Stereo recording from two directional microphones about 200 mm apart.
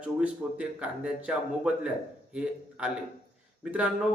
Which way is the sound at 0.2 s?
5° right (ahead or behind).